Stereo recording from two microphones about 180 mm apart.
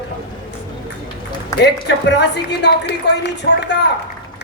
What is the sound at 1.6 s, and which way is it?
A man's voice, 70° left (ahead or behind).